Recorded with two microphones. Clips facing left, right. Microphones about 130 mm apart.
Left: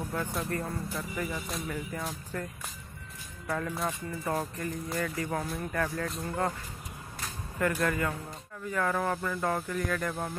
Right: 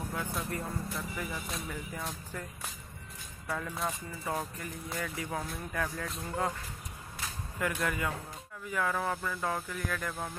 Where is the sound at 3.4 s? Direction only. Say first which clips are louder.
Left 3 dB; 5° right (ahead or behind).